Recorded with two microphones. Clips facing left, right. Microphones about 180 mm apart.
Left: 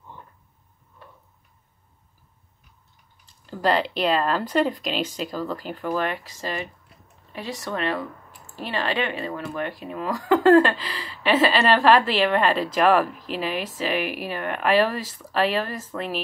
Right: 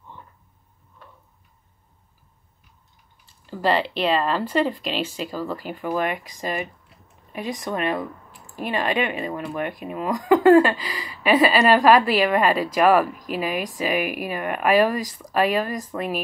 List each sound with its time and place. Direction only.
3.3 s speech: 5° right (ahead or behind)